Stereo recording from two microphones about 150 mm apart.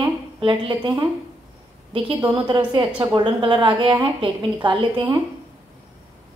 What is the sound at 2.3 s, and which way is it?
A woman's voice, 30° right (ahead or behind).